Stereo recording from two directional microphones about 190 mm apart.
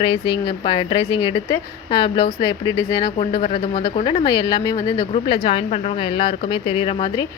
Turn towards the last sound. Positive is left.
turn(degrees=30)  # may be behind; listen again after turning